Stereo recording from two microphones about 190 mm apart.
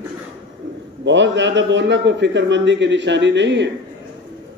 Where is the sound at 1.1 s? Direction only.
70° right (ahead or behind).